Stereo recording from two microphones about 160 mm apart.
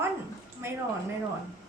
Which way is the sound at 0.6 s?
15° right (ahead or behind).